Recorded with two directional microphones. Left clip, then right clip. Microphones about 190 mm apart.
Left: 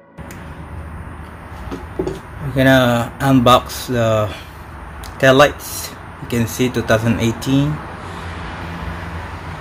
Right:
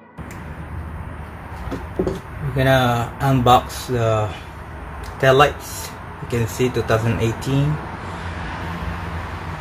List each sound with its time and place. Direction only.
2.5 s speech: 40° left (ahead or behind)
5.2 s speech: 35° left (ahead or behind)